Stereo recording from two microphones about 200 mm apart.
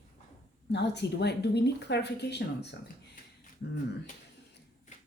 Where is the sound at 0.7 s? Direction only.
60° left (ahead or behind).